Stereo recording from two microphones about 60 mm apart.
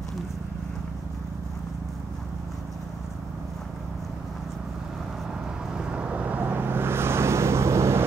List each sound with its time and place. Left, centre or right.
5.7 s vehicle: centre; by 8.0 s right